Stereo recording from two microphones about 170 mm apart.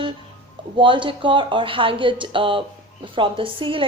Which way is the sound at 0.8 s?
30° right (ahead or behind).